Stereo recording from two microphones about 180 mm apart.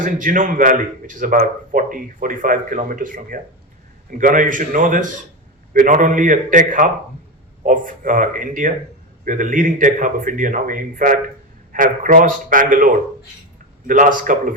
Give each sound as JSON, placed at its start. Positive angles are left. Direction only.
{"t": 0.0, "sound": "speech", "side_deg": -50}